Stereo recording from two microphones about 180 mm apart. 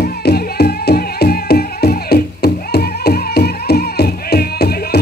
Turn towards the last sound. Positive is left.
turn(degrees=60)  # may be behind; listen again after turning